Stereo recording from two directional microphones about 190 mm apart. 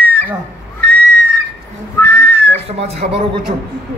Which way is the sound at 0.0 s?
10° left (ahead or behind).